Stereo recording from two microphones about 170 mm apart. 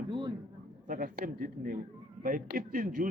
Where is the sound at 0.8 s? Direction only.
55° right (ahead or behind).